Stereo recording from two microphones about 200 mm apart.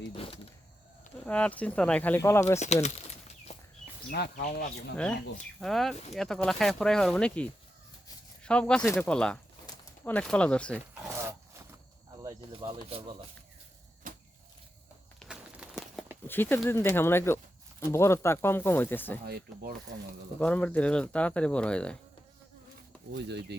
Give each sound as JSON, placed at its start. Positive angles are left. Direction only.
{"t": 0.1, "sound": "a sound", "side_deg": 25}
{"t": 1.2, "sound": "speech", "side_deg": 5}
{"t": 2.8, "sound": "a sound", "side_deg": 35}
{"t": 4.1, "sound": "speech", "side_deg": 55}
{"t": 5.5, "sound": "speech", "side_deg": 0}
{"t": 11.0, "sound": "a sound", "side_deg": -15}
{"t": 12.2, "sound": "speech", "side_deg": -25}
{"t": 14.0, "sound": "a sound", "side_deg": -45}
{"t": 15.2, "sound": "crumpling", "side_deg": -5}
{"t": 16.2, "sound": "speech", "side_deg": 10}
{"t": 19.2, "sound": "speech", "side_deg": -50}
{"t": 20.4, "sound": "speech", "side_deg": 5}
{"t": 23.1, "sound": "speech", "side_deg": -60}